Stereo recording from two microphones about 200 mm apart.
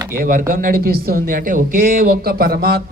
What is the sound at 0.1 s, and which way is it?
Speech, 45° right (ahead or behind).